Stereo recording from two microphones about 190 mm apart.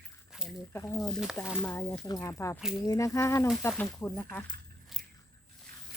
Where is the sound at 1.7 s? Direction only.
10° left (ahead or behind).